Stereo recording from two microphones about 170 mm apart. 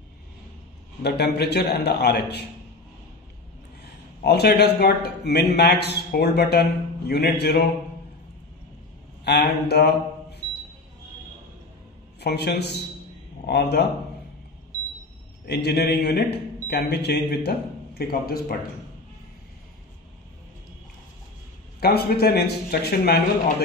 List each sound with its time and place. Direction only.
1.0 s a man's voice: 70° left (ahead or behind)
3.8 s a man's voice: 70° left (ahead or behind)
9.2 s a sound: 75° left (ahead or behind)
12.2 s a man's voice: 70° left (ahead or behind)
15.4 s a man's voice: 70° left (ahead or behind)
21.7 s a man's voice: 65° left (ahead or behind)